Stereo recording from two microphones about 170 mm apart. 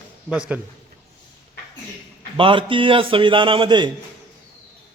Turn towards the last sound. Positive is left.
turn(degrees=-25)  # may be behind; listen again after turning